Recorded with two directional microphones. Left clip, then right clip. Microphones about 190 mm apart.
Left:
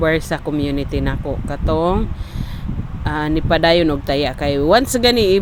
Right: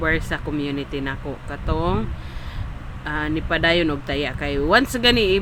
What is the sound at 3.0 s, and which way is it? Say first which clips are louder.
Speech: left 5 dB; 25° left (ahead or behind).